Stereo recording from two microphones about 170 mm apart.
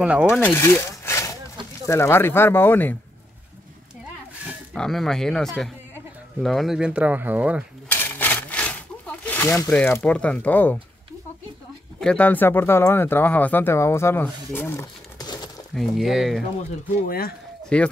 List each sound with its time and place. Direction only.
0.0 s speech: 5° right (ahead or behind)
0.4 s a sound: 15° left (ahead or behind)
1.9 s speech: 15° left (ahead or behind)
4.7 s speech: centre (ahead or behind)
7.9 s a sound: 10° left (ahead or behind)
12.0 s speech: 5° left (ahead or behind); by 15.6 s 25° left (ahead or behind)
15.7 s speech: centre (ahead or behind)
17.0 s speech: 60° left (ahead or behind)
17.7 s speech: 5° left (ahead or behind)